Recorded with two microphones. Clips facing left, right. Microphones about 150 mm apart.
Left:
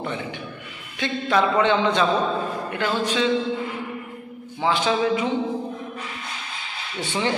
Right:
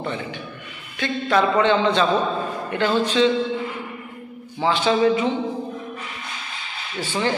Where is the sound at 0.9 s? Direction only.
15° left (ahead or behind).